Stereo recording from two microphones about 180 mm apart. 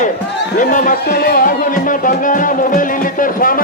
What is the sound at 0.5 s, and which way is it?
Speech, 45° left (ahead or behind).